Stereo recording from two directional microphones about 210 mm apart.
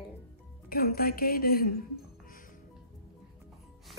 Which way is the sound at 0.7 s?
45° left (ahead or behind).